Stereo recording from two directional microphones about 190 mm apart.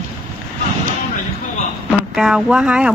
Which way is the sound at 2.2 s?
5° right (ahead or behind).